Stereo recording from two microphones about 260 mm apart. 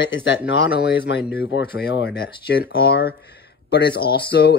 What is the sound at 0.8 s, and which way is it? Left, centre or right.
Speech, left.